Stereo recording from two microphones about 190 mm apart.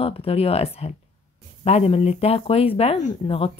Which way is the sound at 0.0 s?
30° left (ahead or behind).